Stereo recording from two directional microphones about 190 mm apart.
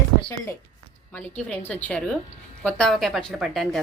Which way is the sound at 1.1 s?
10° left (ahead or behind).